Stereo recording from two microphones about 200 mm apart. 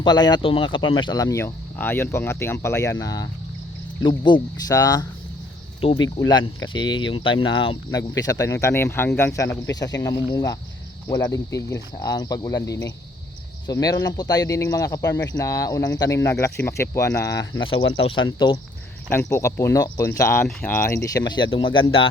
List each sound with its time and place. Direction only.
0.0 s speech: 20° left (ahead or behind)